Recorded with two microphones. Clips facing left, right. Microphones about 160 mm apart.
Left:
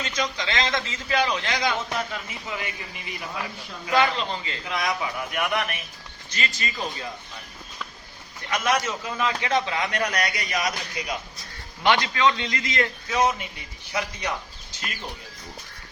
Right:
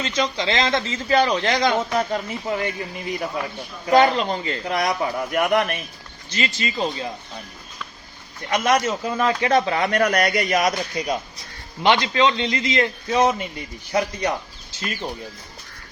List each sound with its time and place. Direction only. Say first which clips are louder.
0.0 s a man's voice: right 5 dB; 30° right (ahead or behind)
3.8 s a man's voice: right 7 dB; 40° right (ahead or behind)
6.3 s a man's voice: right 5 dB; 30° right (ahead or behind)
8.4 s a man's voice: right 5 dB; 35° right (ahead or behind)
10.0 s a man's voice: right 8 dB; 50° right (ahead or behind)
11.8 s a man's voice: right 3 dB; 20° right (ahead or behind); by 14.3 s 40° right (ahead or behind)